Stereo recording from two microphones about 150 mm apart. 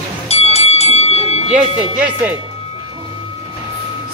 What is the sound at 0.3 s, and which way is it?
Bell, 45° left (ahead or behind).